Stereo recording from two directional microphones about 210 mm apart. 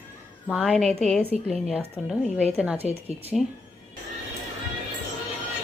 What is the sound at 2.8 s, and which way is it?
Speech, 30° right (ahead or behind).